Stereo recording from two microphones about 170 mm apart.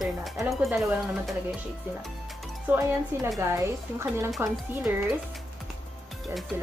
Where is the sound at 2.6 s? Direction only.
15° right (ahead or behind).